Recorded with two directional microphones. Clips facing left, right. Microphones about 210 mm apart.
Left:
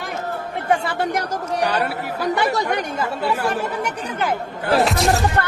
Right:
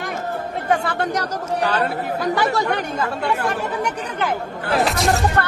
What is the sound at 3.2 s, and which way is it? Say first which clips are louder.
A woman's voice: left 2 dB; 5° left (ahead or behind).